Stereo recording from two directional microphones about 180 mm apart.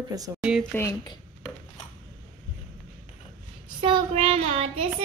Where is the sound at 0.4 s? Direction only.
5° right (ahead or behind).